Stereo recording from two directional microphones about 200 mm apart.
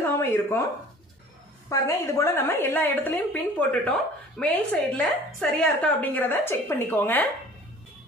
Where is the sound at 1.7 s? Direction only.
15° left (ahead or behind).